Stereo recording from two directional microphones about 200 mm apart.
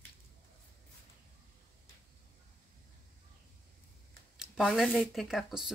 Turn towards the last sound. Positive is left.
turn(degrees=0)  # may be behind; listen again after turning